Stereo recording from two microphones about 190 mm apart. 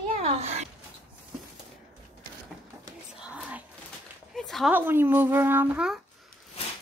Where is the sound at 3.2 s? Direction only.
5° right (ahead or behind).